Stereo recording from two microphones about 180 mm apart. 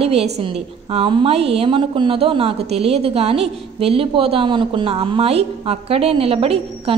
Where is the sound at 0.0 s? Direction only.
35° right (ahead or behind).